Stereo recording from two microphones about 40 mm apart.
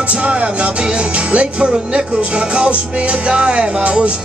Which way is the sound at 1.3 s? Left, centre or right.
Right.